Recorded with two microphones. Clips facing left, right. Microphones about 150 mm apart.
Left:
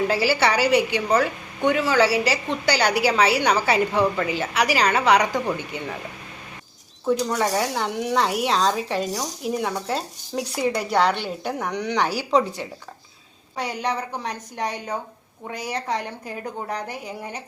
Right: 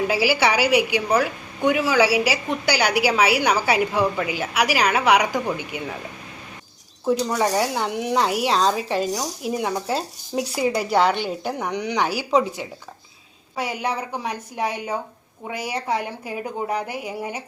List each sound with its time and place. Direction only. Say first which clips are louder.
0.1 s a woman's voice: right 1 dB; 5° right (ahead or behind)
7.1 s speech: right 1 dB; 5° right (ahead or behind)
11.8 s a woman's voice: left 1 dB; 20° right (ahead or behind)
13.6 s a woman's voice: right 1 dB; 10° right (ahead or behind)